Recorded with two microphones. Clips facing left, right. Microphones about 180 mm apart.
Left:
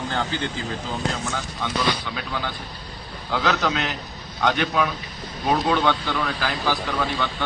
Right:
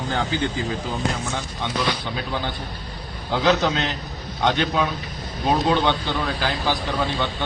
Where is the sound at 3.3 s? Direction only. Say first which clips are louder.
Right 3 dB; 25° right (ahead or behind).